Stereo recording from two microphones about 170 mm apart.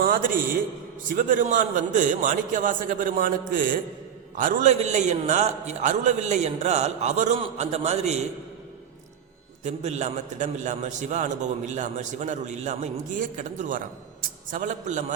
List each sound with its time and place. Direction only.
0.0 s a sound: 55° right (ahead or behind)
1.0 s a man's voice: 50° right (ahead or behind)
9.6 s a man's voice: 40° right (ahead or behind)